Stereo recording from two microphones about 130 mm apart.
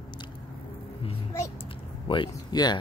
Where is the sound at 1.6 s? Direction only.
40° left (ahead or behind).